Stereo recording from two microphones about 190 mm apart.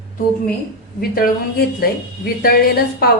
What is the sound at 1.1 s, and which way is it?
Speech, 50° left (ahead or behind).